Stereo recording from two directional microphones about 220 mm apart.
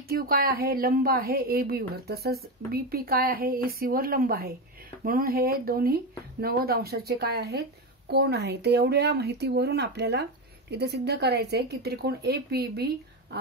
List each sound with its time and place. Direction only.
0.1 s a woman's voice: 45° right (ahead or behind)